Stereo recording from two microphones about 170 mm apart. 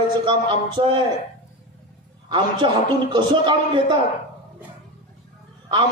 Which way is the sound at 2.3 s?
30° right (ahead or behind).